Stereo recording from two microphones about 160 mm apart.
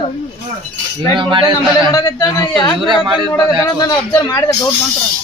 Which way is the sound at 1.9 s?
25° left (ahead or behind).